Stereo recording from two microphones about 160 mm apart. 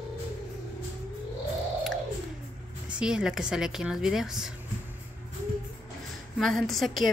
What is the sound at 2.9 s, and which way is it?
Speech, 5° right (ahead or behind).